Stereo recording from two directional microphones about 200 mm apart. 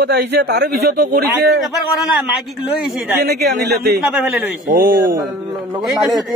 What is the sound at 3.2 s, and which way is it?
Speech, 55° right (ahead or behind).